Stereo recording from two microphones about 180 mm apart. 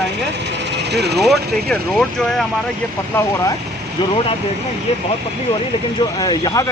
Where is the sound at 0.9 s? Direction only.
65° right (ahead or behind).